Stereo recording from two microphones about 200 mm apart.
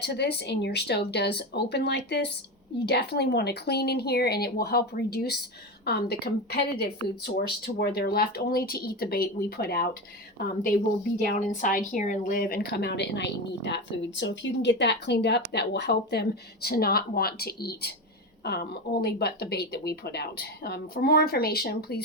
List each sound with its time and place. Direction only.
0.0 s speech: 55° left (ahead or behind)